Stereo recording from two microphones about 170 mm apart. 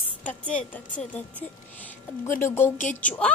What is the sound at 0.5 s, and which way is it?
Speech, 10° left (ahead or behind).